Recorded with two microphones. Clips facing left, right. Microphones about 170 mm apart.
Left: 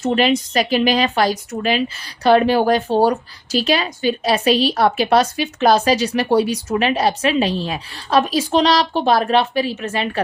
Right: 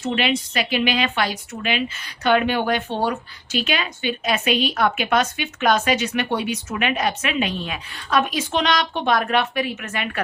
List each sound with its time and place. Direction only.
0.0 s speech: 40° left (ahead or behind)